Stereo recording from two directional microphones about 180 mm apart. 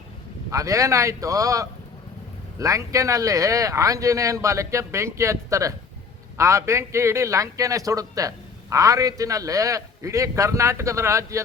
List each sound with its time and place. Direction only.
0.5 s speech: 20° right (ahead or behind)